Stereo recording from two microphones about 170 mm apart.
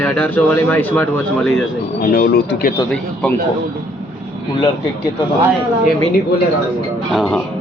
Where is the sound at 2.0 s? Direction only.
60° left (ahead or behind).